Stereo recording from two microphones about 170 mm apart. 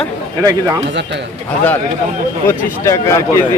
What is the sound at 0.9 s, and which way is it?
Speech, 90° right.